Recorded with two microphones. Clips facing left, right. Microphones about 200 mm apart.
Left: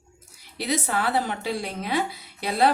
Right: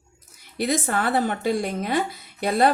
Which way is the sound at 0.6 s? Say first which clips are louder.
Right 2 dB; 50° right (ahead or behind).